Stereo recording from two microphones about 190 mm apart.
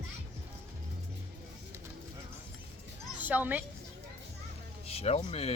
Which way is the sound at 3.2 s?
10° right (ahead or behind).